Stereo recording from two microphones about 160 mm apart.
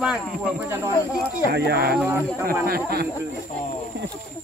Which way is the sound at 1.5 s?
90° right.